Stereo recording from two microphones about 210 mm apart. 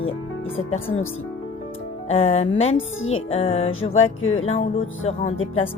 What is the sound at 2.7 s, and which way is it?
Speech, 70° left (ahead or behind).